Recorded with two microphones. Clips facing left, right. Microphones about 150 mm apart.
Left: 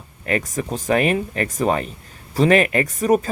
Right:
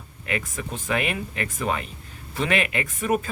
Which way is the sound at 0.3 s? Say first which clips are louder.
Left 7 dB; 40° left (ahead or behind).